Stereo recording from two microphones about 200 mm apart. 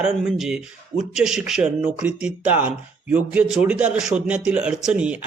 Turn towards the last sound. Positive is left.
turn(degrees=-5)  # may be behind; listen again after turning